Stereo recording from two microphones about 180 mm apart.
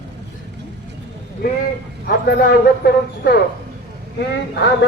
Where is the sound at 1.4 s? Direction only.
55° left (ahead or behind).